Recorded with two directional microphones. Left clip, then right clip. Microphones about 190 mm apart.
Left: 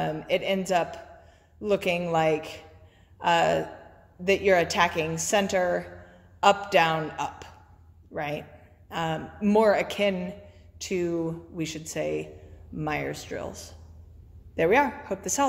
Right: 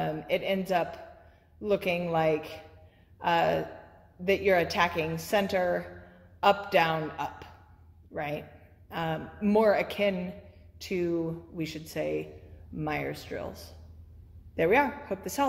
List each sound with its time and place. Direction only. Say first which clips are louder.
0.0 s a woman's voice: left 3 dB; 10° left (ahead or behind)